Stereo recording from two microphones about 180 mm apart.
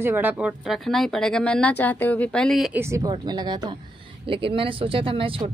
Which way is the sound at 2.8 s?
20° right (ahead or behind).